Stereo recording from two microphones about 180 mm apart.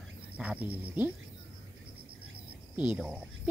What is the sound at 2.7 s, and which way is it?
Speech, 5° right (ahead or behind).